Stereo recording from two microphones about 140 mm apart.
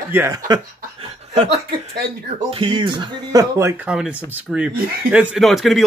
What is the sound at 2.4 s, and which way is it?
Speech, 40° right (ahead or behind).